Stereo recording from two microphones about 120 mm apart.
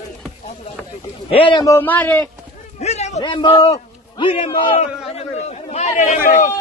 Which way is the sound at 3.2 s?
40° left (ahead or behind).